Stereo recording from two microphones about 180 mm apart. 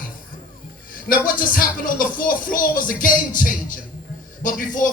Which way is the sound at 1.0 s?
50° left (ahead or behind).